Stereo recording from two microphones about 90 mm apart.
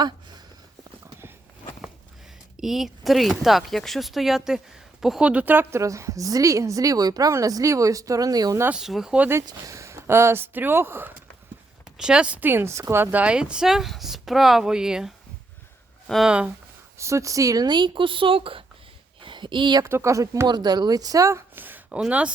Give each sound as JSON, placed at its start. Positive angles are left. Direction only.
{"t": 2.6, "sound": "speech", "side_deg": -5}
{"t": 5.3, "sound": "speech", "side_deg": -20}
{"t": 5.8, "sound": "a woman's voice", "side_deg": -35}
{"t": 8.7, "sound": "speech", "side_deg": -5}
{"t": 9.5, "sound": "speech", "side_deg": -35}
{"t": 11.9, "sound": "speech", "side_deg": -5}
{"t": 16.2, "sound": "speech", "side_deg": -10}
{"t": 17.0, "sound": "speech", "side_deg": -35}
{"t": 19.2, "sound": "a sound", "side_deg": -60}
{"t": 19.8, "sound": "a woman's voice", "side_deg": -30}
{"t": 20.5, "sound": "speech", "side_deg": -50}
{"t": 21.5, "sound": "a sound", "side_deg": -20}
{"t": 21.8, "sound": "speech", "side_deg": -10}